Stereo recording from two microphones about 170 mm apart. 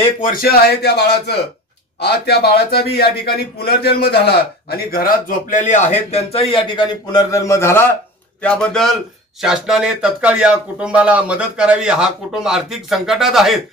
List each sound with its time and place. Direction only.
0.2 s a man's voice: 60° left (ahead or behind); by 13.6 s centre (ahead or behind)